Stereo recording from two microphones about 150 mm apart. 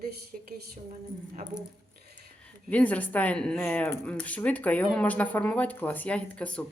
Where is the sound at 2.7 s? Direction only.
10° left (ahead or behind).